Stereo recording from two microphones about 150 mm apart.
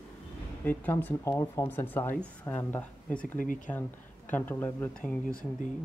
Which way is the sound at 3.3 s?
65° left (ahead or behind).